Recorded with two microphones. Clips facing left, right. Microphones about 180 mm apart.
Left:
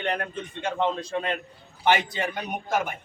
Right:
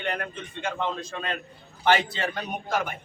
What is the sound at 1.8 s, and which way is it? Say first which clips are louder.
Speech: even; 15° left (ahead or behind).